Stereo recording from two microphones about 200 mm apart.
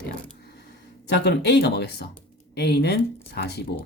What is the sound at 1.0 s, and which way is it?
Speech, 60° left (ahead or behind).